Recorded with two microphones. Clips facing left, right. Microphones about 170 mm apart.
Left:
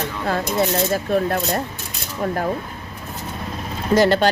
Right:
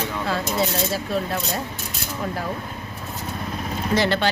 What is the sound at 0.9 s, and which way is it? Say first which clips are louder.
Speech: left 5 dB; 50° left (ahead or behind).